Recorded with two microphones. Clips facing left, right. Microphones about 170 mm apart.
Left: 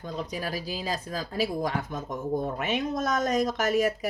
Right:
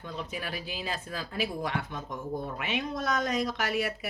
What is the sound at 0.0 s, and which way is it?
Speech, 35° left (ahead or behind).